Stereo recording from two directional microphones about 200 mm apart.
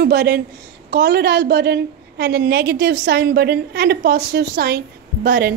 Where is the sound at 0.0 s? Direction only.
55° right (ahead or behind).